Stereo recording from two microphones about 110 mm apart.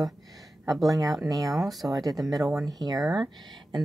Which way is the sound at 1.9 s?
35° right (ahead or behind).